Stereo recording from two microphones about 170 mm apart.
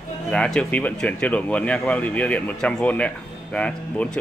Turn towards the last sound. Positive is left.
turn(degrees=5)  # may be behind; listen again after turning